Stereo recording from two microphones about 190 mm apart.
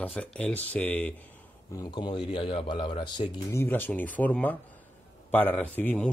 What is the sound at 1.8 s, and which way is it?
Speech, 25° left (ahead or behind).